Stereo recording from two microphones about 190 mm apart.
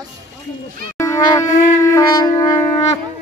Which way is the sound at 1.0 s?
20° left (ahead or behind).